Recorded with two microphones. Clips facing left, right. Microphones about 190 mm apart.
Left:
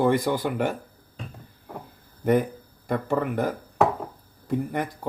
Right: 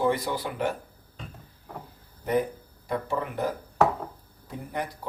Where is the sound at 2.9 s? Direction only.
55° left (ahead or behind).